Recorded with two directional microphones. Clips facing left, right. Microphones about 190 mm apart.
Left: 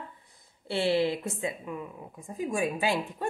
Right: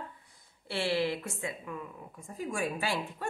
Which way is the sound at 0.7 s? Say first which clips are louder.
Left 4 dB; 20° left (ahead or behind).